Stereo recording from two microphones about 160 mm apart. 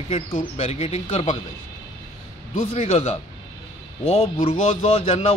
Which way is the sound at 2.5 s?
40° left (ahead or behind).